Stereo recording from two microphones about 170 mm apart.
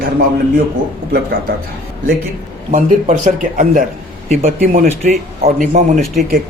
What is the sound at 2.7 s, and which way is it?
Speech, 50° right (ahead or behind).